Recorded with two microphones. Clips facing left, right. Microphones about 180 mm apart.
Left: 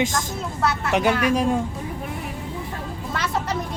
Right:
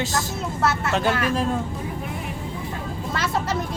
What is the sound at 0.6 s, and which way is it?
Speech, centre (ahead or behind).